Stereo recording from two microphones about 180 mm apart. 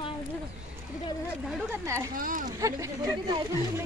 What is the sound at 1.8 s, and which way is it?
Speech, 15° right (ahead or behind).